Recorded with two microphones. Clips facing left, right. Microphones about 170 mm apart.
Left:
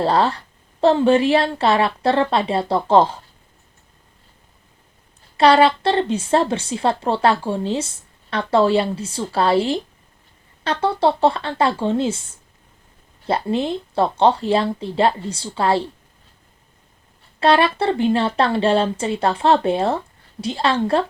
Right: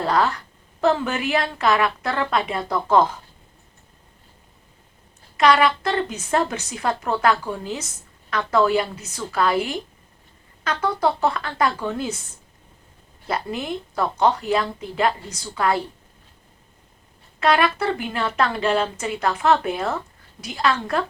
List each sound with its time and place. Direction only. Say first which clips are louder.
0.0 s a woman's voice: left 3 dB; 30° left (ahead or behind)
5.4 s a woman's voice: left 4 dB; 30° left (ahead or behind)
13.2 s a woman's voice: left 6 dB; 30° left (ahead or behind)
17.4 s a woman's voice: left 3 dB; 30° left (ahead or behind)